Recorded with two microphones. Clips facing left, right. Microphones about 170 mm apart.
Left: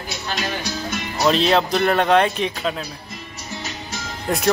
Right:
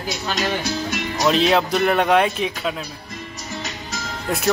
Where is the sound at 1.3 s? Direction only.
5° right (ahead or behind).